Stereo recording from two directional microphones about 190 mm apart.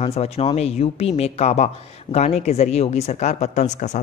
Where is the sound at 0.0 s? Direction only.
30° left (ahead or behind).